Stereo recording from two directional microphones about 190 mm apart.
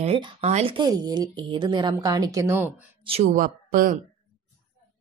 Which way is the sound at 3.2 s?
45° right (ahead or behind).